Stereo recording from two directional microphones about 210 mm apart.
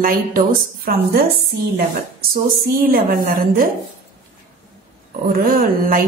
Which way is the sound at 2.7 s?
40° right (ahead or behind).